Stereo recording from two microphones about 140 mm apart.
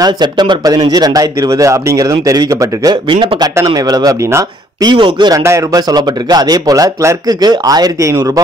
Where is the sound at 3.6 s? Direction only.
25° right (ahead or behind).